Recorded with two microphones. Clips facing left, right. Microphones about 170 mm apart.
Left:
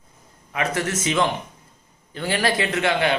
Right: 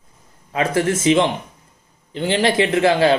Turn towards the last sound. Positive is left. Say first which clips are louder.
# right 6 dB
turn(degrees=-30)  # may be behind; listen again after turning